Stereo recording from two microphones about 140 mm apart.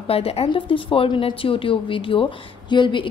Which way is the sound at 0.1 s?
45° left (ahead or behind).